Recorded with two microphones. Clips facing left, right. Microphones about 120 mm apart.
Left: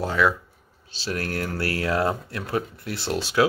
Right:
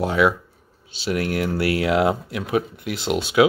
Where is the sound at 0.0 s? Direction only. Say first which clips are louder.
Right 3 dB; 20° right (ahead or behind).